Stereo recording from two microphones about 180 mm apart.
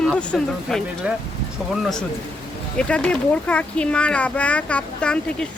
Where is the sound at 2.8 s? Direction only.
5° left (ahead or behind).